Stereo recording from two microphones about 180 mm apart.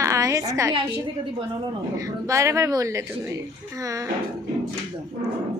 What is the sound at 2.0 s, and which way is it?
A woman's voice, 15° right (ahead or behind).